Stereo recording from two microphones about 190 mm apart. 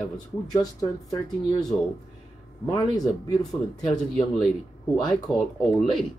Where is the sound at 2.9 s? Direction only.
20° left (ahead or behind).